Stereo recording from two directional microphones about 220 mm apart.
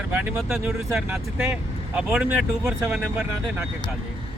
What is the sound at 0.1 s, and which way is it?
Speech, 5° right (ahead or behind).